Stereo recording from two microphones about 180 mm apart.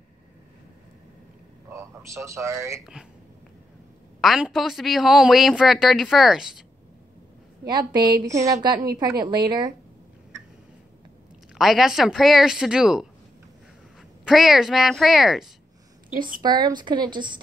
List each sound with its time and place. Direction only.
1.7 s speech: 15° right (ahead or behind)
4.2 s a man's voice: centre (ahead or behind)
7.6 s a woman's voice: 25° right (ahead or behind)
11.5 s a man's voice: centre (ahead or behind)
14.2 s a man's voice: centre (ahead or behind)
16.4 s a woman's voice: 25° right (ahead or behind)